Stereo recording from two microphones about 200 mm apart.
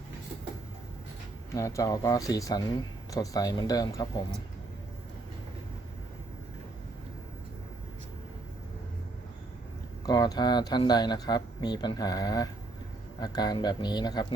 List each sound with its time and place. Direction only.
1.5 s speech: 15° left (ahead or behind)
10.1 s speech: 20° left (ahead or behind)